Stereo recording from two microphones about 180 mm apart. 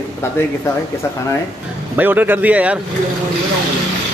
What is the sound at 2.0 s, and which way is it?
Speech, 10° right (ahead or behind).